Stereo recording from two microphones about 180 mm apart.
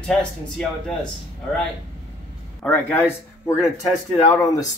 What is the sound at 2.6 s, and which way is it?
Speech, 10° left (ahead or behind).